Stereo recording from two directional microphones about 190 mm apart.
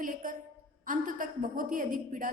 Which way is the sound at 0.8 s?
45° right (ahead or behind).